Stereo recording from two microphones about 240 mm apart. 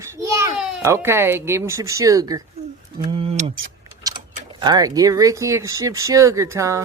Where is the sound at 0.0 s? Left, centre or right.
Centre.